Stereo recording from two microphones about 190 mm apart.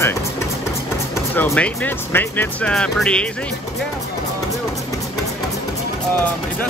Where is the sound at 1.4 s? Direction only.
10° left (ahead or behind).